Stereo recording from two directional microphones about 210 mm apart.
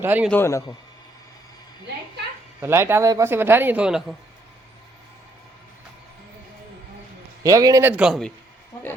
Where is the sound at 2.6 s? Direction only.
10° right (ahead or behind).